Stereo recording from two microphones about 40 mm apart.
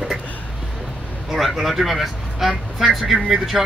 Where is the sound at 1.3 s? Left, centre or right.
Centre.